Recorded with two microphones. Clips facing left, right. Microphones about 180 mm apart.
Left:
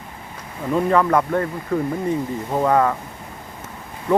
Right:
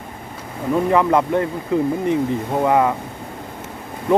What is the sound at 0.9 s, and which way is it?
Speech, 20° right (ahead or behind).